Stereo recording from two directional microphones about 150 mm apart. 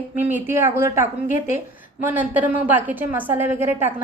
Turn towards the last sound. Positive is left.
turn(degrees=-15)  # may be behind; listen again after turning